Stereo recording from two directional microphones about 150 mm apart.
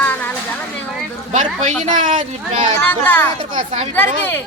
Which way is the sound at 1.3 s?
50° right (ahead or behind).